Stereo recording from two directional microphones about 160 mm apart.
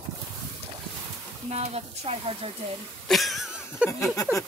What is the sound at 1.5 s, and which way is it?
Speech, 40° right (ahead or behind).